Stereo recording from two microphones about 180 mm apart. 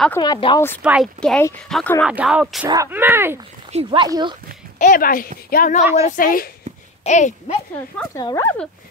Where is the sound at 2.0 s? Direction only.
5° right (ahead or behind).